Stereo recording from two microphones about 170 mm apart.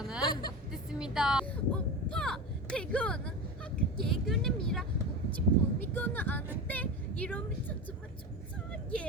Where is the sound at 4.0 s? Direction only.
Centre (ahead or behind).